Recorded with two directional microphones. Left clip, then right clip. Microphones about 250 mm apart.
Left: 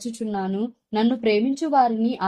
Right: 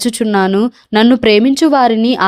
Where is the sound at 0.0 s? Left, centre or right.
Right.